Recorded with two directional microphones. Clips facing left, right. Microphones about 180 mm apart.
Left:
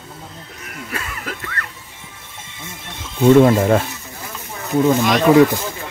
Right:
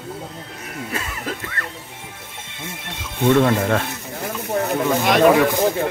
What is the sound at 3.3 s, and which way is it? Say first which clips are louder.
Speech: left 5 dB; 20° left (ahead or behind).